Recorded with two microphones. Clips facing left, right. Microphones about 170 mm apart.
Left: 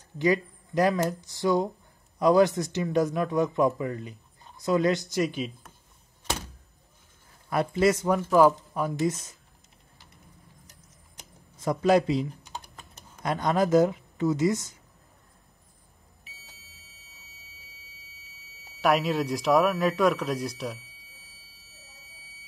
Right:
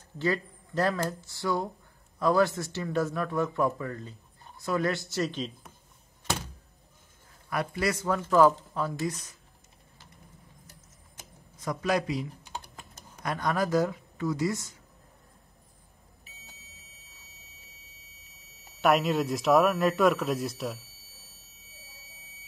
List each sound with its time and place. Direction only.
0.2 s speech: 15° left (ahead or behind)
7.4 s speech: 25° left (ahead or behind)
11.5 s a man's voice: 30° left (ahead or behind)
18.8 s speech: centre (ahead or behind)